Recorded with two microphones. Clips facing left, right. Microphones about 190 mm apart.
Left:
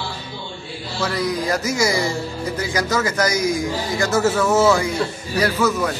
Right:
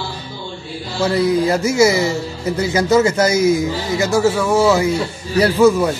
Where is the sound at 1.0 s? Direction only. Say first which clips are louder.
Right 7 dB; 25° right (ahead or behind); by 5.8 s 10° right (ahead or behind).